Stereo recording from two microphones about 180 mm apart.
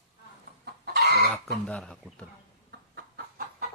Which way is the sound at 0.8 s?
60° right (ahead or behind).